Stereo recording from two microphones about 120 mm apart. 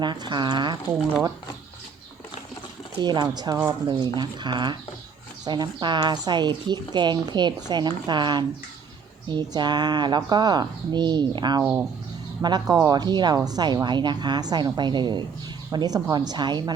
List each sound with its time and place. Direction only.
0.0 s a woman's voice: 40° right (ahead or behind)
3.0 s a woman's voice: 40° right (ahead or behind)
11.6 s speech: 15° right (ahead or behind)
12.4 s a woman's voice: 35° right (ahead or behind)